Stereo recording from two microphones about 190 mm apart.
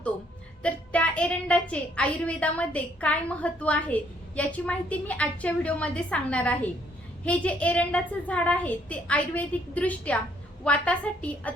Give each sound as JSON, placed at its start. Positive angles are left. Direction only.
{"t": 0.6, "sound": "a woman's voice", "side_deg": 5}